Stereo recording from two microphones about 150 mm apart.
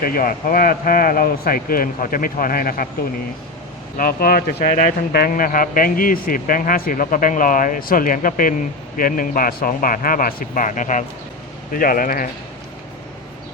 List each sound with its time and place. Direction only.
0.0 s speech: 70° left (ahead or behind)
3.9 s speech: 80° left
5.1 s speech: 75° left (ahead or behind); by 11.0 s 55° left (ahead or behind)
11.7 s speech: 70° left (ahead or behind)